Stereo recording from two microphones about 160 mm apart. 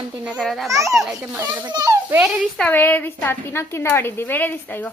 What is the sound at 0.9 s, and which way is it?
Speech, centre (ahead or behind).